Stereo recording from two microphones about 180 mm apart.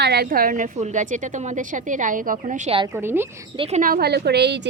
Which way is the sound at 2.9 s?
15° right (ahead or behind).